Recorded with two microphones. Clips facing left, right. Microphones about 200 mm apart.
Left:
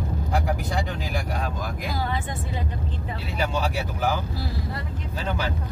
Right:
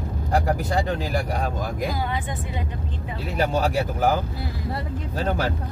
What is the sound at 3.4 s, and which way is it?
Speech, 50° right (ahead or behind).